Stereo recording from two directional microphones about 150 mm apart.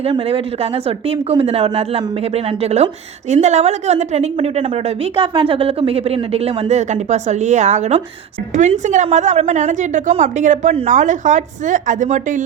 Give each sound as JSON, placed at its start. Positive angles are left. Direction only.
{"t": 0.0, "sound": "a woman's voice", "side_deg": -40}